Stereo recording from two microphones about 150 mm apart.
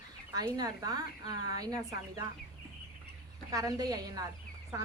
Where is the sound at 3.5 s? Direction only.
25° right (ahead or behind).